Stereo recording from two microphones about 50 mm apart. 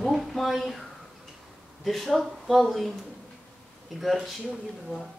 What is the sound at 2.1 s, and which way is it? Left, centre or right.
Speech, centre.